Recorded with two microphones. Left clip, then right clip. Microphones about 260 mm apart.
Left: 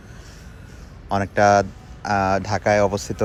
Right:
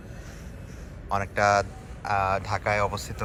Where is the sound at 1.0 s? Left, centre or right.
Left.